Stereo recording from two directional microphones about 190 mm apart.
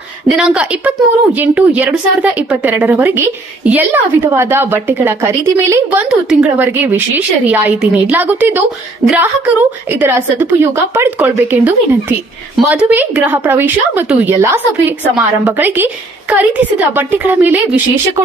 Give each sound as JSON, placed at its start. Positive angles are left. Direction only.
{"t": 0.4, "sound": "a woman's voice", "side_deg": -5}